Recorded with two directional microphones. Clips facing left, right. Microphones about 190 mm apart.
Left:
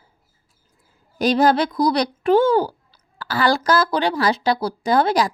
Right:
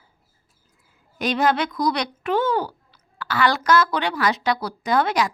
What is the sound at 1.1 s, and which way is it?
A woman's voice, 35° left (ahead or behind).